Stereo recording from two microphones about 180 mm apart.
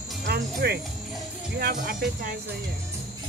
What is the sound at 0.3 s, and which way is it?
Speech, 60° right (ahead or behind).